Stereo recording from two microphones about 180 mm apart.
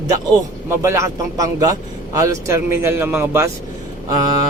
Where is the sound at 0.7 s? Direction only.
15° right (ahead or behind).